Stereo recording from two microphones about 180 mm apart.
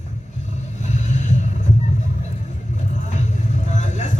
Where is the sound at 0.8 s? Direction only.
40° left (ahead or behind).